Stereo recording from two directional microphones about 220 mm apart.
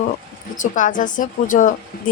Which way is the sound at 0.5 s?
35° left (ahead or behind).